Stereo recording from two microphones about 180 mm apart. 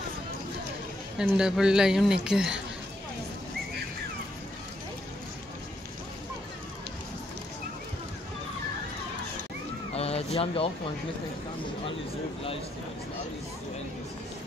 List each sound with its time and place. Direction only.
1.1 s a woman's voice: 5° right (ahead or behind)
9.9 s speech: 35° left (ahead or behind)